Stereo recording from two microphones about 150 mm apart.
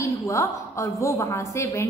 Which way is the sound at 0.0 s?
20° left (ahead or behind).